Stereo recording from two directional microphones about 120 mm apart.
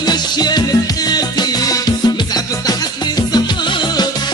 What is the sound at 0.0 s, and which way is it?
Music, 35° left (ahead or behind).